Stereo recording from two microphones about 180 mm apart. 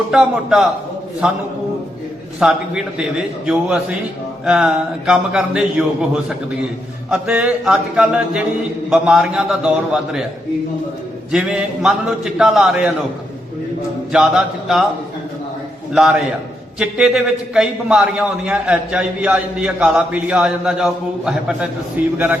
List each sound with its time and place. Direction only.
0.1 s a man's voice: 5° right (ahead or behind)
2.4 s a man's voice: 5° right (ahead or behind)
7.1 s mantra: 5° right (ahead or behind)
8.9 s a man's voice: 5° right (ahead or behind)
11.3 s a man's voice: 5° right (ahead or behind)
14.1 s a man's voice: 5° right (ahead or behind)
16.8 s a man's voice: 5° right (ahead or behind)
22.0 s mantra: 10° right (ahead or behind)